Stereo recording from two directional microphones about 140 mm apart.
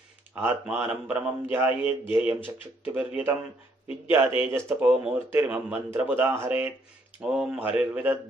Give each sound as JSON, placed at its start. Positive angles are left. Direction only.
{"t": 0.3, "sound": "a man's voice", "side_deg": -15}
{"t": 4.4, "sound": "a man's voice", "side_deg": -20}